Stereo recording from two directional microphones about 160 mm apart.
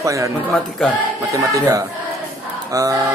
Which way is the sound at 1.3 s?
20° right (ahead or behind).